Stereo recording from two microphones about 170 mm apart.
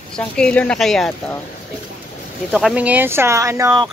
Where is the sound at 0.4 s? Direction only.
5° left (ahead or behind).